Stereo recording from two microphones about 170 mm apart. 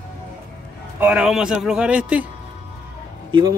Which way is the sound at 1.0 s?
5° right (ahead or behind).